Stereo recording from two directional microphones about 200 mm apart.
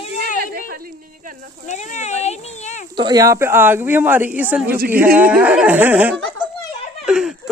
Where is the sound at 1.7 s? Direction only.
35° left (ahead or behind).